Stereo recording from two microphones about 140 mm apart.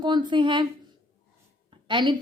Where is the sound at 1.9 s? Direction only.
35° right (ahead or behind).